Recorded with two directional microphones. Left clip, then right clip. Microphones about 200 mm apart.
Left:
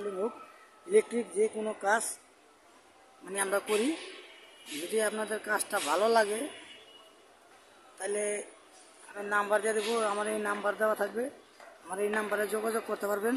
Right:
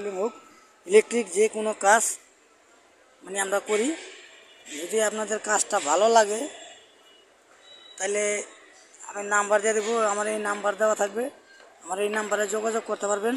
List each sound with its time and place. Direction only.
0.9 s music: 25° right (ahead or behind)
3.3 s a man's voice: 10° right (ahead or behind)
4.9 s a man's voice: 15° right (ahead or behind)
8.0 s music: 20° right (ahead or behind)
9.1 s a man's voice: 15° right (ahead or behind)